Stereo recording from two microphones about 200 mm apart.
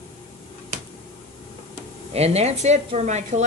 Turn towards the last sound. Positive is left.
turn(degrees=-35)  # may be behind; listen again after turning